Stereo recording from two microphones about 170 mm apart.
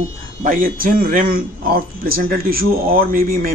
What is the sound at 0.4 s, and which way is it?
Speech, 55° right (ahead or behind).